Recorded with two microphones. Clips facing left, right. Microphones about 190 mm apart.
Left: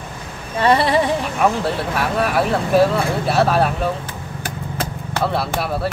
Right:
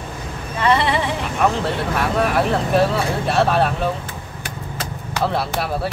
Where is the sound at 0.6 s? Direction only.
35° left (ahead or behind).